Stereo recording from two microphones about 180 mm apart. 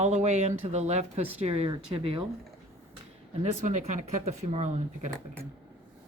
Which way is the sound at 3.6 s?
45° right (ahead or behind).